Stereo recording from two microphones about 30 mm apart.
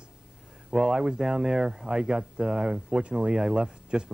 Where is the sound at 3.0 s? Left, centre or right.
Right.